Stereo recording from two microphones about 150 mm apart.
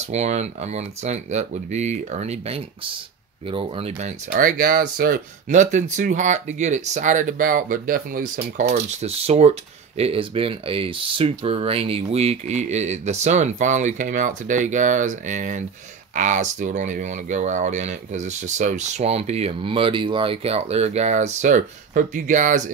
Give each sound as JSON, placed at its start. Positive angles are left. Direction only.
{"t": 0.0, "sound": "speech", "side_deg": -50}
{"t": 4.3, "sound": "speech", "side_deg": -65}